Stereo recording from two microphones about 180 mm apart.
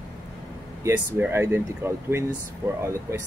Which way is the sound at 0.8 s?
15° right (ahead or behind).